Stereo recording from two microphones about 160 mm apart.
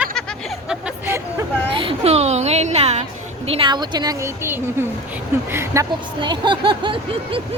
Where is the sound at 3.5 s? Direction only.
30° right (ahead or behind).